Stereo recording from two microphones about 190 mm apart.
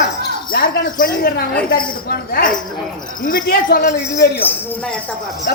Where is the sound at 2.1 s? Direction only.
50° left (ahead or behind).